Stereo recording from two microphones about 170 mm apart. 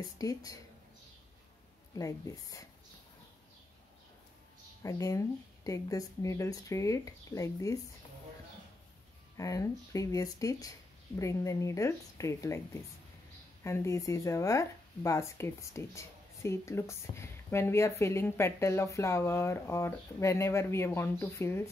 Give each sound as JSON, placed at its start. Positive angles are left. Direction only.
{"t": 0.0, "sound": "speech", "side_deg": 20}
{"t": 2.0, "sound": "speech", "side_deg": 20}
{"t": 4.8, "sound": "speech", "side_deg": 20}
{"t": 9.4, "sound": "speech", "side_deg": 20}
{"t": 13.7, "sound": "speech", "side_deg": 15}